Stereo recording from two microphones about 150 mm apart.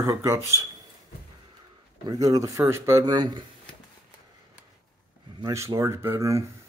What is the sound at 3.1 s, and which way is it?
Speech, 30° right (ahead or behind).